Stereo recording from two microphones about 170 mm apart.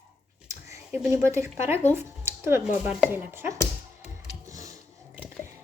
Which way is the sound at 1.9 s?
15° right (ahead or behind).